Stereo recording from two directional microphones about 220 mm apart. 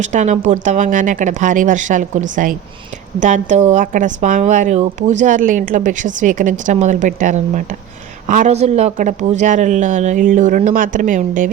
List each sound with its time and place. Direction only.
0.0 s speech: 35° right (ahead or behind)